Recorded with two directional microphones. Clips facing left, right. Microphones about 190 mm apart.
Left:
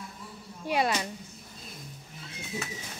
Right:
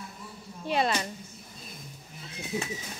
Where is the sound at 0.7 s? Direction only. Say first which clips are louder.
Even; 10° left (ahead or behind).